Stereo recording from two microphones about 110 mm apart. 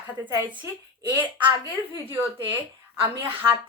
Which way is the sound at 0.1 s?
15° right (ahead or behind).